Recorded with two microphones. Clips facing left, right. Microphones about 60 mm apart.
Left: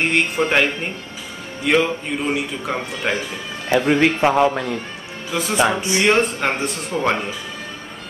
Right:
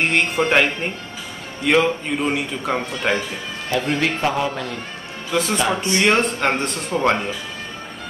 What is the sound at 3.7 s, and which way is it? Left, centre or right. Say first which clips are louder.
Speech: left 5 dB; left.